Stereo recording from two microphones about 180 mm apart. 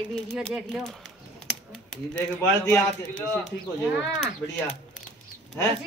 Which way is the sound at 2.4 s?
10° left (ahead or behind).